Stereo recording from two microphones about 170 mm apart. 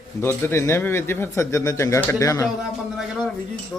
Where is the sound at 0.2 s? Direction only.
15° left (ahead or behind).